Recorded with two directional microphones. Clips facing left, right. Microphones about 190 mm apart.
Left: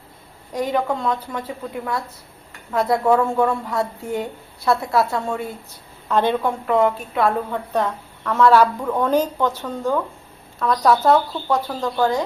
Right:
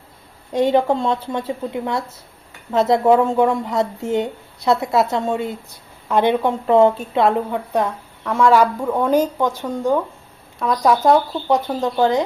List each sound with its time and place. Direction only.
0.5 s a woman's voice: 25° right (ahead or behind)
6.7 s a woman's voice: 30° right (ahead or behind)